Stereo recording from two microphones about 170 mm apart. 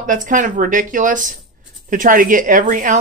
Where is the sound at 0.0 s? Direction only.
50° right (ahead or behind).